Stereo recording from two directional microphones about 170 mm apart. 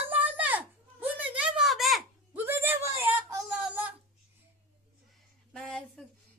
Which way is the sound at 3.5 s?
5° right (ahead or behind).